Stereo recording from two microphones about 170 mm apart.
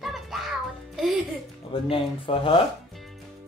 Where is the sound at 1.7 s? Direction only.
30° left (ahead or behind).